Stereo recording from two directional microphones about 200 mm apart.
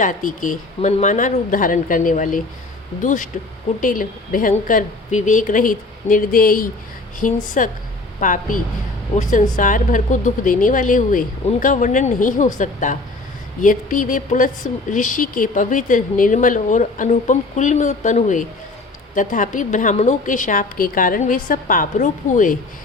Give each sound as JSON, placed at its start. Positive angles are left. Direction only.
{"t": 0.0, "sound": "a woman's voice", "side_deg": 40}